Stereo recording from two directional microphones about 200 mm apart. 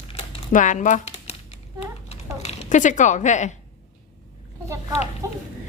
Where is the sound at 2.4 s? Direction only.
40° left (ahead or behind).